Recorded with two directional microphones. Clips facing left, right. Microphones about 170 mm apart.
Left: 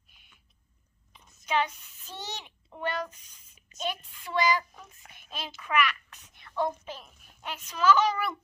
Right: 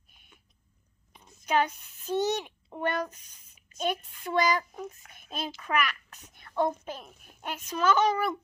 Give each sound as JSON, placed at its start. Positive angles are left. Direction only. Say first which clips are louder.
{"t": 1.4, "sound": "a child's voice", "louder": "right 2 dB", "side_deg": -45}